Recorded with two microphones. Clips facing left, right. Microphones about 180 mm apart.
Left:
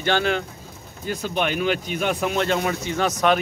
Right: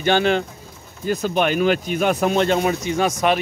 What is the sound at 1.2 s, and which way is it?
A man's voice, 45° right (ahead or behind).